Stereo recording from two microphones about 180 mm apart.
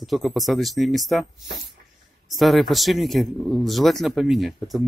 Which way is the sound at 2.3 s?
Centre (ahead or behind).